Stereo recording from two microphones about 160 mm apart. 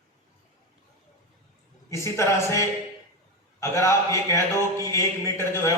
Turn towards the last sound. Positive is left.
turn(degrees=20)  # may be behind; listen again after turning